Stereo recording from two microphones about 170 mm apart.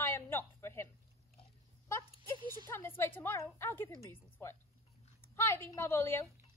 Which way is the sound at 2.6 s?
15° left (ahead or behind).